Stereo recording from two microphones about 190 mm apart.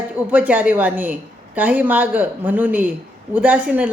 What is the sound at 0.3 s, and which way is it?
A woman's voice, 10° right (ahead or behind).